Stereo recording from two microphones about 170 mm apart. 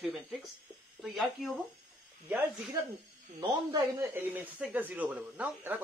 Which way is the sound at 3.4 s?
25° right (ahead or behind).